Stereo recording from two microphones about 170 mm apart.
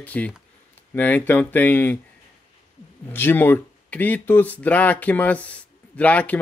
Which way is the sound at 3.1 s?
10° left (ahead or behind).